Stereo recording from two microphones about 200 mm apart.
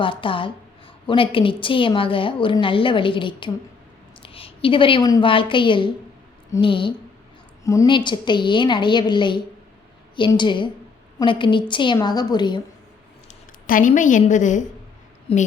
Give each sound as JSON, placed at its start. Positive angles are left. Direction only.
{"t": 0.0, "sound": "a woman's voice", "side_deg": 25}
{"t": 13.2, "sound": "speech", "side_deg": 40}
{"t": 15.3, "sound": "a woman's voice", "side_deg": 30}